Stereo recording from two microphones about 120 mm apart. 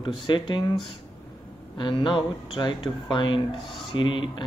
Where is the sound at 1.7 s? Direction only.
40° left (ahead or behind).